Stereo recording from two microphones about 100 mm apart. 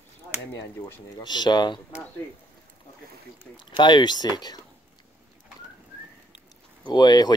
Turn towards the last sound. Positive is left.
turn(degrees=45)  # may be behind; listen again after turning